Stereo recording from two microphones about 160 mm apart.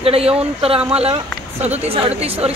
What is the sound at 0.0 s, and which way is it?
Speech, 40° right (ahead or behind).